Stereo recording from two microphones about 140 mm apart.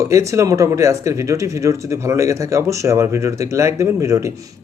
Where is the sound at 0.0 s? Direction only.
20° right (ahead or behind).